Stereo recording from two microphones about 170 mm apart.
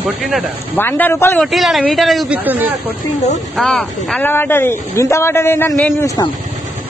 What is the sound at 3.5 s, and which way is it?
A woman's voice, 5° left (ahead or behind).